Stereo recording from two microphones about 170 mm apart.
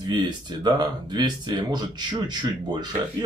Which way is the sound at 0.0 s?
25° right (ahead or behind).